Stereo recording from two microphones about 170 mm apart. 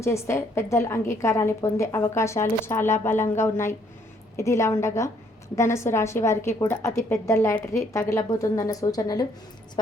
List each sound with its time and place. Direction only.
0.0 s a woman's voice: 15° left (ahead or behind)